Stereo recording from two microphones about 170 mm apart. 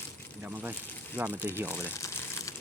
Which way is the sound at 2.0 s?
20° left (ahead or behind).